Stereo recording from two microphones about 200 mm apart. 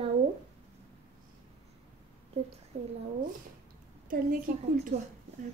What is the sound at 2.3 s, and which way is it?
Speech, 30° right (ahead or behind).